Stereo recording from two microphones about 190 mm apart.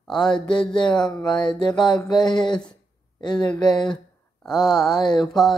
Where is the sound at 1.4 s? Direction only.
25° left (ahead or behind).